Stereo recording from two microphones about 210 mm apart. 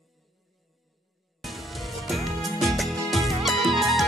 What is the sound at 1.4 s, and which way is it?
Music, centre (ahead or behind).